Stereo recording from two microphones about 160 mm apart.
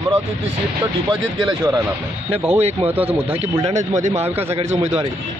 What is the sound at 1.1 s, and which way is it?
Speech, 25° right (ahead or behind).